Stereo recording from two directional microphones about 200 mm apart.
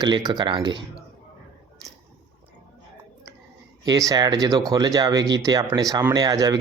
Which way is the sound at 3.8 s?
20° right (ahead or behind).